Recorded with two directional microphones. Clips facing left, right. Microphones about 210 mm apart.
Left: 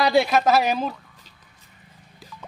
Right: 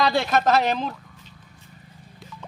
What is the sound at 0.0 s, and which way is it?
Speech, 10° left (ahead or behind).